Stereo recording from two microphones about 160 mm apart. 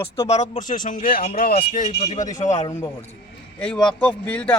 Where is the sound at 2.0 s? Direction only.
45° left (ahead or behind).